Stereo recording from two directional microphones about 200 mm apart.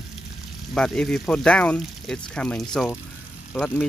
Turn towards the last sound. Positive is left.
turn(degrees=5)  # may be behind; listen again after turning